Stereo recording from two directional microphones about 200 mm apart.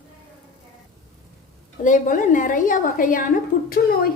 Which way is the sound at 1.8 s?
40° left (ahead or behind).